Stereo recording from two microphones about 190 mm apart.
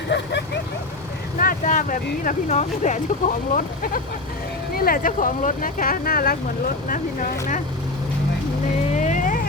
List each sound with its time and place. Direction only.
0.1 s vehicle: 65° left (ahead or behind)
1.4 s speech: 45° left (ahead or behind)
9.0 s vehicle: 40° left (ahead or behind)